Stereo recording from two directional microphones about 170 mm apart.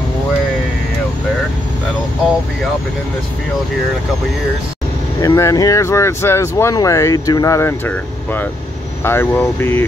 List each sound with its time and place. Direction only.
5.2 s speech: 20° left (ahead or behind)